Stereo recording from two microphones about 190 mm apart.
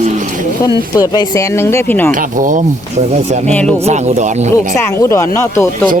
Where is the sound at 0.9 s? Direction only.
20° left (ahead or behind).